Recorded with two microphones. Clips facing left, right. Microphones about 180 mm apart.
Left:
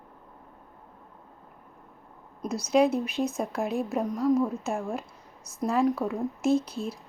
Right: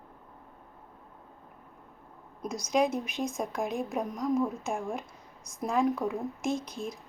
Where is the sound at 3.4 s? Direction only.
5° left (ahead or behind).